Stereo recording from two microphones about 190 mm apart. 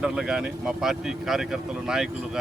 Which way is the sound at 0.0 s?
5° right (ahead or behind).